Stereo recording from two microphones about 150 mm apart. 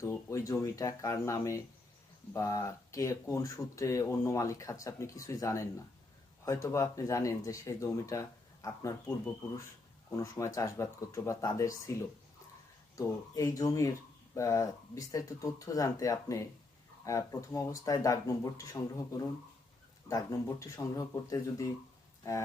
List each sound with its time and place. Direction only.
0.0 s speech: 20° left (ahead or behind)
13.0 s speech: 20° left (ahead or behind)